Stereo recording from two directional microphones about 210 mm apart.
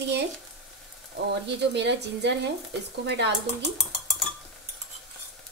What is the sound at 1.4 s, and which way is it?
A woman's voice, 55° right (ahead or behind).